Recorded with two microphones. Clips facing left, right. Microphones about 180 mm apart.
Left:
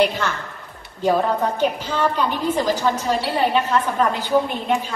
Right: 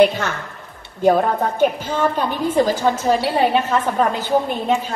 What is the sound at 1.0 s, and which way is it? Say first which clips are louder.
A woman's voice: right 3 dB; 50° right (ahead or behind).